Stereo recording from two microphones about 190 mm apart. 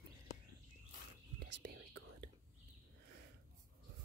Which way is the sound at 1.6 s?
55° right (ahead or behind).